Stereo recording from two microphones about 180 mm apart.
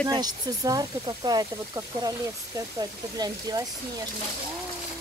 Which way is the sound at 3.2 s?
20° right (ahead or behind).